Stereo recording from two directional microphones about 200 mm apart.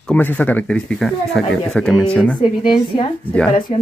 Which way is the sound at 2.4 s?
25° left (ahead or behind).